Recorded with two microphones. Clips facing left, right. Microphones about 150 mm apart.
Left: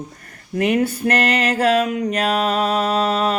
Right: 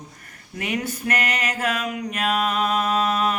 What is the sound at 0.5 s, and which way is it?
Mantra, 55° left (ahead or behind).